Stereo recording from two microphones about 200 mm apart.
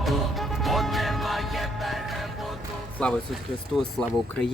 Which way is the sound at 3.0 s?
5° left (ahead or behind).